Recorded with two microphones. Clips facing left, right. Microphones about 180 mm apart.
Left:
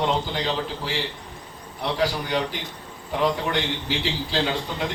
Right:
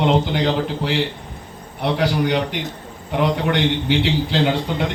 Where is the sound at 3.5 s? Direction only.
65° right (ahead or behind).